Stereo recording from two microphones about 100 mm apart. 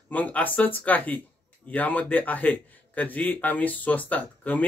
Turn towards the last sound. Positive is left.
turn(degrees=15)  # may be behind; listen again after turning